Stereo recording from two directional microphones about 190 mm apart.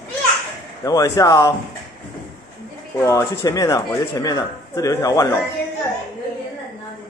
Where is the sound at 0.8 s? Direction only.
20° left (ahead or behind).